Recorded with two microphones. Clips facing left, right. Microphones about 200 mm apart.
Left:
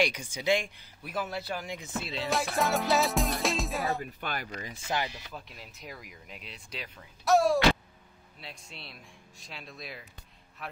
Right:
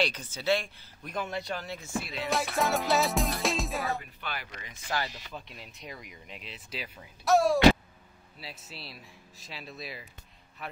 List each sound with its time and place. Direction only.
0.0 s speech: 10° left (ahead or behind)
1.1 s speech: 5° left (ahead or behind); by 2.1 s 20° left (ahead or behind)
2.1 s speech: centre (ahead or behind)
4.0 s speech: 45° left (ahead or behind)
5.3 s speech: centre (ahead or behind)